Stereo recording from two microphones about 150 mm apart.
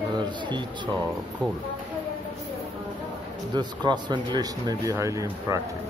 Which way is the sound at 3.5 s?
30° right (ahead or behind).